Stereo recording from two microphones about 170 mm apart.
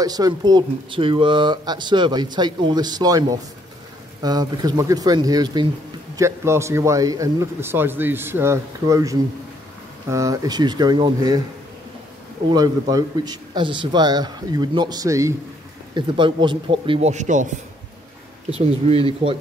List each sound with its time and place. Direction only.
0.0 s a man's voice: 20° right (ahead or behind)
12.4 s speech: 25° right (ahead or behind)
15.9 s a man's voice: 30° right (ahead or behind); by 17.5 s 45° right (ahead or behind)
18.5 s a man's voice: 35° right (ahead or behind)